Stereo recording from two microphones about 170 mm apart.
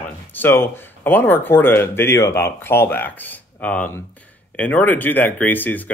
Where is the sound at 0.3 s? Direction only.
10° left (ahead or behind).